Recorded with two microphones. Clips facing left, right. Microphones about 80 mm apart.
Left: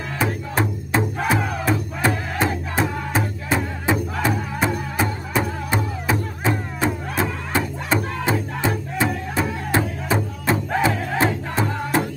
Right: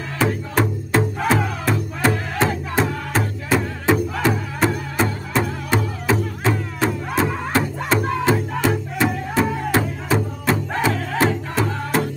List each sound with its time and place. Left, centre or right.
0.2 s music: centre